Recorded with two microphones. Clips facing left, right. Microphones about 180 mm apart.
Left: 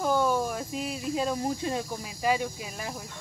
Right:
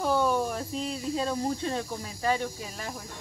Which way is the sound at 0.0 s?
Centre (ahead or behind).